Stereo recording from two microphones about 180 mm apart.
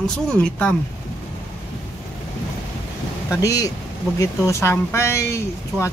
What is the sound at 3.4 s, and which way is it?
Speech, 20° left (ahead or behind).